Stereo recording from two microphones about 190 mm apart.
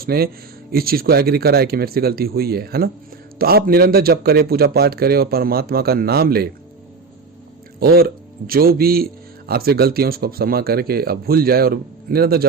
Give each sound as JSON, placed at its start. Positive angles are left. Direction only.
{"t": 0.0, "sound": "a man's voice", "side_deg": -55}
{"t": 7.8, "sound": "a man's voice", "side_deg": -55}